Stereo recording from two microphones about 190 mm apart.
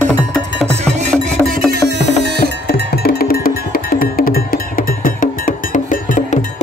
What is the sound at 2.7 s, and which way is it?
Music, 55° left (ahead or behind).